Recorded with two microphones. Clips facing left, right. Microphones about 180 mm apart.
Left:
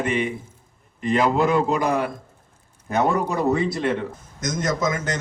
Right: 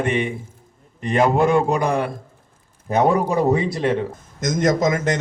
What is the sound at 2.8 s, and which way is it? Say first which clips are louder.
A man's voice: right 4 dB; 40° right (ahead or behind).